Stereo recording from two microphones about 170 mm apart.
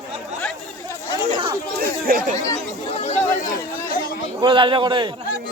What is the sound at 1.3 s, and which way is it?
Speech, 25° right (ahead or behind).